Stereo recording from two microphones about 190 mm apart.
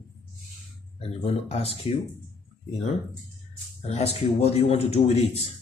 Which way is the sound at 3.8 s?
35° left (ahead or behind).